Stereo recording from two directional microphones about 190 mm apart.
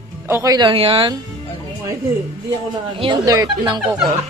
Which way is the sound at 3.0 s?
20° right (ahead or behind).